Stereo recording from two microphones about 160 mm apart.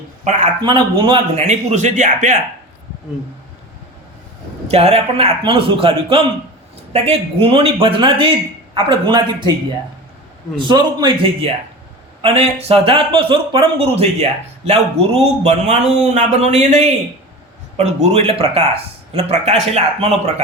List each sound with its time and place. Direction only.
0.6 s a man's voice: 30° right (ahead or behind)
1.5 s speech: 45° right (ahead or behind)
4.7 s a man's voice: 40° right (ahead or behind)
10.6 s a man's voice: 30° right (ahead or behind)
12.2 s a man's voice: 40° right (ahead or behind)